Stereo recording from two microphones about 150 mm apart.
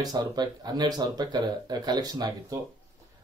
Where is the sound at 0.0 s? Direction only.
25° right (ahead or behind).